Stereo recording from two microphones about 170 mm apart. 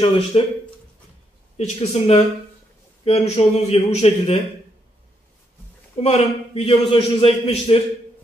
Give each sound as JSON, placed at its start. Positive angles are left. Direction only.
{"t": 0.3, "sound": "a man's voice", "side_deg": 35}
{"t": 1.6, "sound": "a man's voice", "side_deg": 40}
{"t": 5.9, "sound": "a man's voice", "side_deg": 40}